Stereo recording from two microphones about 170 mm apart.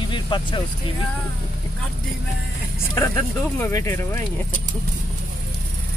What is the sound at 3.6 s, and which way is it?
Speech, 15° left (ahead or behind).